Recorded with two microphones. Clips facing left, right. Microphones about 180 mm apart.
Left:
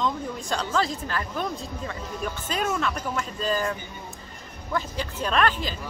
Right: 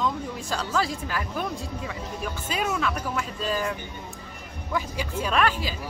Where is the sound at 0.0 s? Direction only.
5° right (ahead or behind).